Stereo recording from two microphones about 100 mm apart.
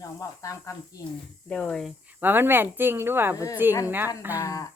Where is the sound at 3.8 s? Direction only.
20° right (ahead or behind).